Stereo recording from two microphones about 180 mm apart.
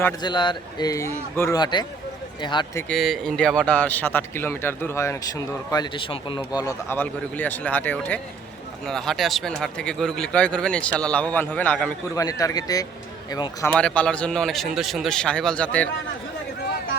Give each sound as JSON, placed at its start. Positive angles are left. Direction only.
{"t": 0.2, "sound": "a man's voice", "side_deg": 25}
{"t": 2.9, "sound": "a man's voice", "side_deg": 0}
{"t": 12.1, "sound": "a man's voice", "side_deg": 20}
{"t": 13.7, "sound": "speech", "side_deg": 5}